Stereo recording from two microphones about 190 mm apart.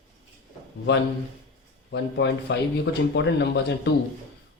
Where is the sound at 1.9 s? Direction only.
65° left (ahead or behind).